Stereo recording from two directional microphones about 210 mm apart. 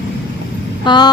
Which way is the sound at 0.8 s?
20° left (ahead or behind).